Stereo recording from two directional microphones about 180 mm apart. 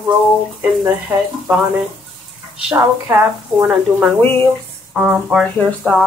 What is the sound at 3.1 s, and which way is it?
Speech, 15° right (ahead or behind).